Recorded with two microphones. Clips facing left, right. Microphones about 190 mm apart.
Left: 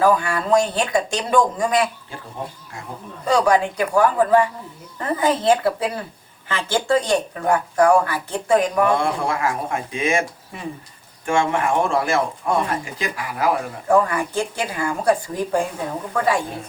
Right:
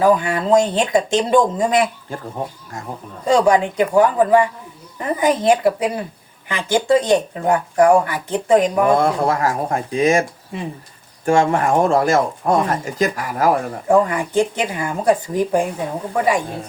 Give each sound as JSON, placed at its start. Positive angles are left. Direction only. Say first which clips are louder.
{"t": 0.0, "sound": "speech", "louder": "right 3 dB", "side_deg": -20}
{"t": 2.7, "sound": "speech", "louder": "right 6 dB", "side_deg": -45}
{"t": 3.2, "sound": "a woman's voice", "louder": "right 3 dB", "side_deg": -20}
{"t": 8.9, "sound": "speech", "louder": "right 5 dB", "side_deg": -40}
{"t": 11.3, "sound": "speech", "louder": "right 4 dB", "side_deg": -40}
{"t": 13.8, "sound": "a woman's voice", "louder": "right 2 dB", "side_deg": -20}